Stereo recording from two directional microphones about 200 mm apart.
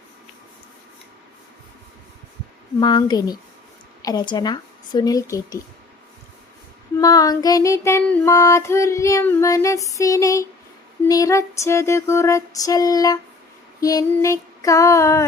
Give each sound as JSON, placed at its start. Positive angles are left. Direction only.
{"t": 2.8, "sound": "speech", "side_deg": 20}
{"t": 7.0, "sound": "female singing", "side_deg": 20}